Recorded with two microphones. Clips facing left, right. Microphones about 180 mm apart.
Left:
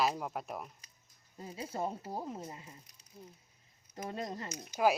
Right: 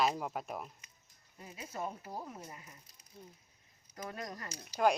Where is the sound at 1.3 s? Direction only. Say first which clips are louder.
Left 4 dB; 30° left (ahead or behind).